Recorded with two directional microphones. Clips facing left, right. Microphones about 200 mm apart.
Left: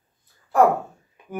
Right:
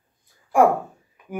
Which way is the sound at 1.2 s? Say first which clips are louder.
Right 1 dB; 25° left (ahead or behind).